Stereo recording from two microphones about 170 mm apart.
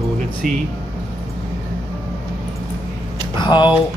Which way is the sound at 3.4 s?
25° left (ahead or behind).